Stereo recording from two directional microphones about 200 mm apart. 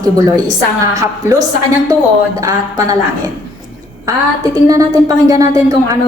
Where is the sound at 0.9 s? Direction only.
15° right (ahead or behind).